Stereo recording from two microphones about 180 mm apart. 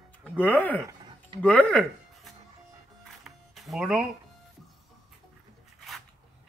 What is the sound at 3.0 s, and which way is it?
Music, centre (ahead or behind).